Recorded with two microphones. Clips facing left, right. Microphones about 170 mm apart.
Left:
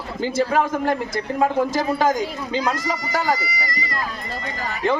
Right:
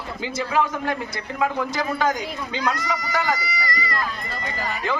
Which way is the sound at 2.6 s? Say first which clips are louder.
Even; 25° left (ahead or behind).